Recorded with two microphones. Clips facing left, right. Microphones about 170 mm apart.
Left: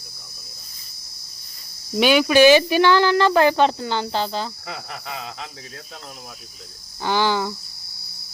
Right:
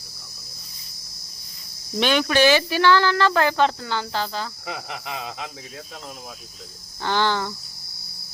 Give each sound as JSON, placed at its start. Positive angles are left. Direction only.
{"t": 2.0, "sound": "speech", "side_deg": 10}
{"t": 4.6, "sound": "cricket", "side_deg": -15}
{"t": 7.0, "sound": "speech", "side_deg": 10}